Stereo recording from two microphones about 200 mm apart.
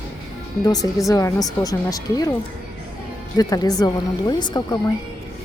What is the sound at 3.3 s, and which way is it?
Speech, 20° left (ahead or behind).